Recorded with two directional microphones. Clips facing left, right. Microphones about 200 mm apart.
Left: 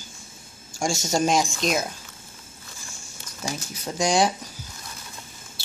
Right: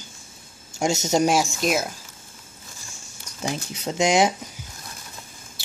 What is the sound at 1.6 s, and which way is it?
Speech, 5° right (ahead or behind).